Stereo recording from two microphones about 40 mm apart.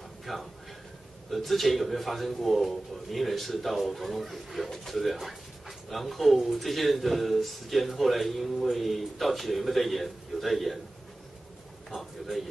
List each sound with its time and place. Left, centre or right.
0.3 s speech: centre
11.9 s speech: centre